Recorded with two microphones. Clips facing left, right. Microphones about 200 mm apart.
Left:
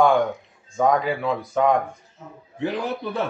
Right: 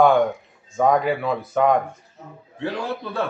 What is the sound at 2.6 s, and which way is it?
Speech, 20° left (ahead or behind).